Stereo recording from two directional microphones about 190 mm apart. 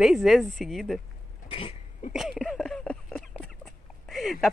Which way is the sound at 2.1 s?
5° right (ahead or behind).